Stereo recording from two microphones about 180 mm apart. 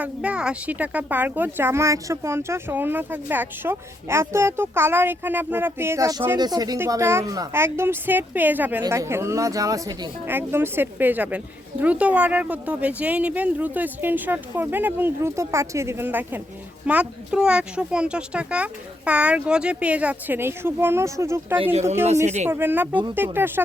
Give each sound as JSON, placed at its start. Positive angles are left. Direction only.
{"t": 0.0, "sound": "speech", "side_deg": -5}
{"t": 21.6, "sound": "speech", "side_deg": -35}
{"t": 22.4, "sound": "speech", "side_deg": -10}
{"t": 22.9, "sound": "speech", "side_deg": -25}
{"t": 23.1, "sound": "speech", "side_deg": -10}